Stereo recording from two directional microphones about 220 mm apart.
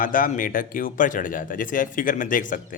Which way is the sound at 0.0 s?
40° left (ahead or behind).